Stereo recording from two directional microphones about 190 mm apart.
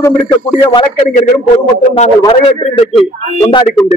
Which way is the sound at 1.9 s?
35° left (ahead or behind).